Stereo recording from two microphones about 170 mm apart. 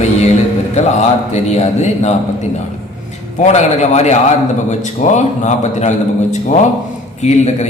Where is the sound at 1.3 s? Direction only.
40° left (ahead or behind).